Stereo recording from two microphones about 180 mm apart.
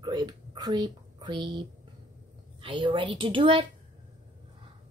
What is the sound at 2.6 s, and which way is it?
A woman's voice, 25° right (ahead or behind).